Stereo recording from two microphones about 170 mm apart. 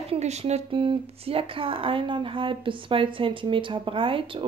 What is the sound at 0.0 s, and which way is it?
Speech, 35° right (ahead or behind).